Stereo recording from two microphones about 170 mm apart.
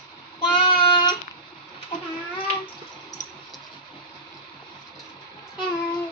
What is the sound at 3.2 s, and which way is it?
Typing, 20° left (ahead or behind).